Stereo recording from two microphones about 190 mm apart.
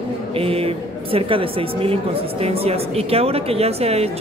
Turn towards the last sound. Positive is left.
turn(degrees=-30)  # may be behind; listen again after turning